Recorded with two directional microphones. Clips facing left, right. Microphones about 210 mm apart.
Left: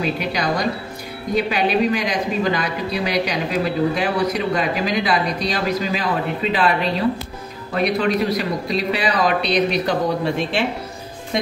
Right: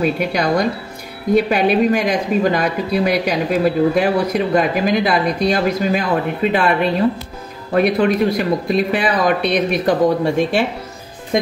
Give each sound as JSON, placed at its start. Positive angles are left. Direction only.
{"t": 0.0, "sound": "speech", "side_deg": -55}